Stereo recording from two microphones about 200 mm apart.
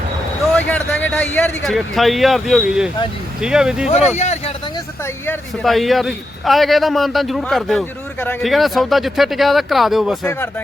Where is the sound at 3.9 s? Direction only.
35° left (ahead or behind).